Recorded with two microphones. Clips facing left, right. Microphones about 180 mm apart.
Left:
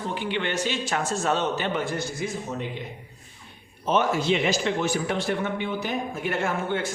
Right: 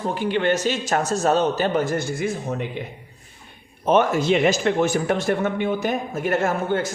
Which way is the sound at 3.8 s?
55° right (ahead or behind).